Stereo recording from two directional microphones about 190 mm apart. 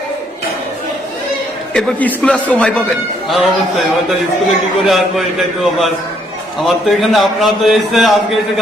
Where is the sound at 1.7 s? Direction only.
5° left (ahead or behind).